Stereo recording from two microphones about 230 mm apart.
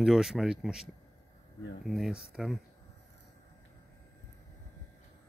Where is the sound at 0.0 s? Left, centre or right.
Centre.